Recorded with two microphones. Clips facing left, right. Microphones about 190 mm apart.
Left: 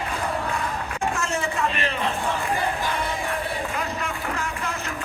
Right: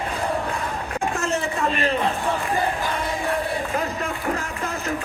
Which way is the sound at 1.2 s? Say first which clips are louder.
Right 3 dB; 40° right (ahead or behind).